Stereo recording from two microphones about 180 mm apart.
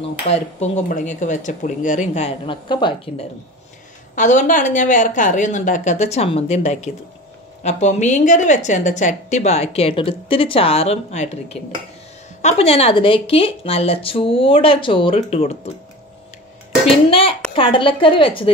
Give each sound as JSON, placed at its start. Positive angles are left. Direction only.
{"t": 0.2, "sound": "speech", "side_deg": 40}
{"t": 4.1, "sound": "a woman's voice", "side_deg": 45}
{"t": 16.8, "sound": "a woman's voice", "side_deg": 30}